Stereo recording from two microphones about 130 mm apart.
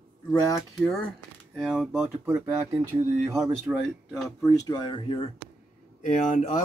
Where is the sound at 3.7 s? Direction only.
15° right (ahead or behind).